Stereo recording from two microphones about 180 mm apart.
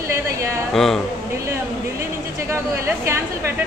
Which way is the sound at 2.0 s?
15° right (ahead or behind).